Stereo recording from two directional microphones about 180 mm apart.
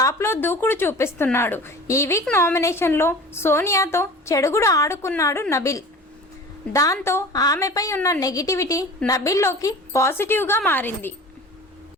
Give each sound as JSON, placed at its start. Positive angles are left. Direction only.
{"t": 0.0, "sound": "a woman's voice", "side_deg": 15}